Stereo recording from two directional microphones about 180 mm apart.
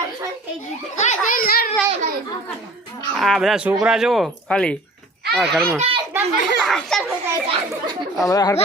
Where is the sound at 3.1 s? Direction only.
Centre (ahead or behind).